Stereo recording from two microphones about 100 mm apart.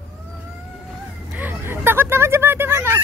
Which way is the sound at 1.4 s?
20° right (ahead or behind).